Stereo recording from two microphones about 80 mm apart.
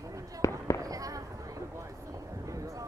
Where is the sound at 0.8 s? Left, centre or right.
Right.